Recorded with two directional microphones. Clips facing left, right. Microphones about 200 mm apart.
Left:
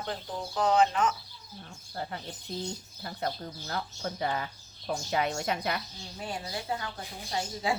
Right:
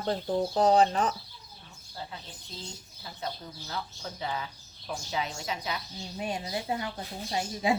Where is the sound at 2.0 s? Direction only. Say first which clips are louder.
Left 5 dB; 60° left (ahead or behind).